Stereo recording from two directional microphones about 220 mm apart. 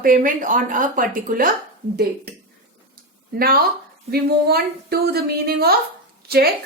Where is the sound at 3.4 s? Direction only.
45° right (ahead or behind).